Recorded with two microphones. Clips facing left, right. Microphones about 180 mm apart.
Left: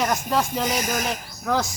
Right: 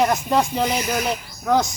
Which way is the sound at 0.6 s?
45° left (ahead or behind).